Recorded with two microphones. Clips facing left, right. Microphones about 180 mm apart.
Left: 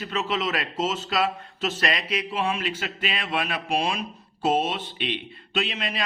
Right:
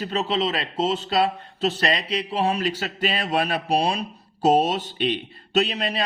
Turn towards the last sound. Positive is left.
turn(degrees=-40)  # may be behind; listen again after turning